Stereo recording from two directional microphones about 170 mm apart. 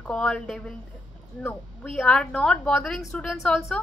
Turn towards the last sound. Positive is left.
turn(degrees=0)  # may be behind; listen again after turning